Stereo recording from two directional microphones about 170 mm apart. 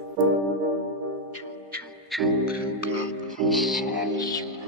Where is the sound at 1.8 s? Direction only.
Centre (ahead or behind).